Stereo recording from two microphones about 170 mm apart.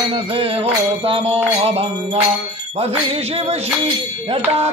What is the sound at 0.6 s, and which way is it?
Bicycle bell, 35° right (ahead or behind).